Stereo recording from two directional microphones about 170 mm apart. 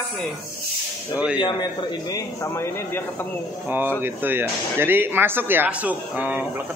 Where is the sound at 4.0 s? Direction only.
10° right (ahead or behind).